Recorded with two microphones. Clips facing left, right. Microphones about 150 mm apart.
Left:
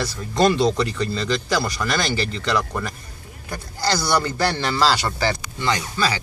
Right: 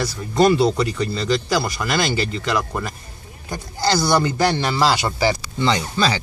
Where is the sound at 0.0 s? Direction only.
10° right (ahead or behind).